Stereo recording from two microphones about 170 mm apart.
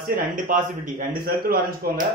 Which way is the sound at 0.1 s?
50° right (ahead or behind).